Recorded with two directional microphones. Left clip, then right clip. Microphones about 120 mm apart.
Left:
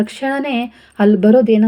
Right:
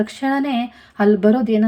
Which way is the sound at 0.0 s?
20° left (ahead or behind).